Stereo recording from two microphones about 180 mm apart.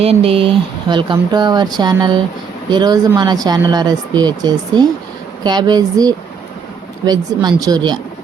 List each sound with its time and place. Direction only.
0.0 s speech: 35° right (ahead or behind)